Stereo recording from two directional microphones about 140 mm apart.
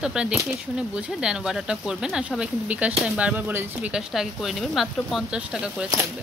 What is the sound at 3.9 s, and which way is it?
Speech, centre (ahead or behind).